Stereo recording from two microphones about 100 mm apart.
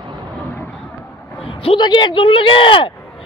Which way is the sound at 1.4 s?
70° left (ahead or behind).